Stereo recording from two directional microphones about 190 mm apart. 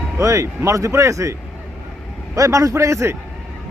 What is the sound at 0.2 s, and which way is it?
Speech, 15° right (ahead or behind).